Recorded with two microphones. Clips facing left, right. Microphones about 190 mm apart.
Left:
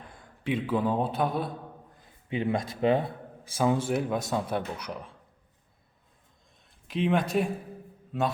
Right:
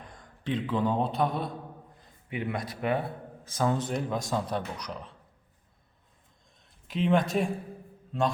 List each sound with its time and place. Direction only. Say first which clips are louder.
0.1 s speech: left 2 dB; 10° left (ahead or behind)
2.3 s speech: left 4 dB; 25° left (ahead or behind)
3.4 s speech: left 2 dB; 10° left (ahead or behind)
6.8 s speech: right 1 dB; centre (ahead or behind)